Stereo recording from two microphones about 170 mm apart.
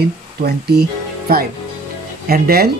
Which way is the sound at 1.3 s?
65° right (ahead or behind).